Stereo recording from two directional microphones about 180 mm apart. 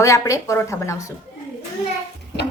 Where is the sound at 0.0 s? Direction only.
15° left (ahead or behind).